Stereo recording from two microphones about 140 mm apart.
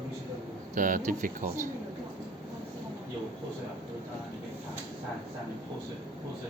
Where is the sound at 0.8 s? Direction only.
70° right (ahead or behind).